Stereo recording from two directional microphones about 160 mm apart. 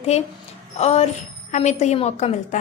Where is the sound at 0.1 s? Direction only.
40° left (ahead or behind).